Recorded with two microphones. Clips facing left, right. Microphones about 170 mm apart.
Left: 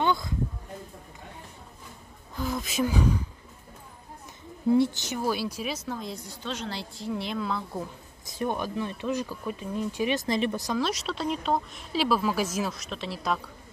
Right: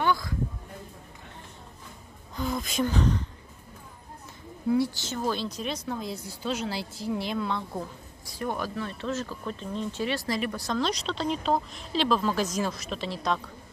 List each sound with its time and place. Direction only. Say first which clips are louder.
0.0 s a sound: even; 20° left (ahead or behind)
2.3 s a woman's voice: even; centre (ahead or behind)
4.7 s a woman's voice: left 3 dB; 20° left (ahead or behind); by 7.9 s centre (ahead or behind)
8.4 s speech: left 2 dB; 20° left (ahead or behind)
10.7 s a woman's voice: even; 5° left (ahead or behind)